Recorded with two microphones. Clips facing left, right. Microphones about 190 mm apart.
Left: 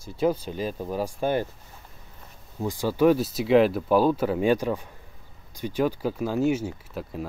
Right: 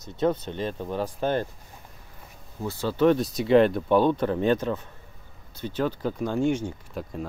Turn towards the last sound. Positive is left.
turn(degrees=5)  # may be behind; listen again after turning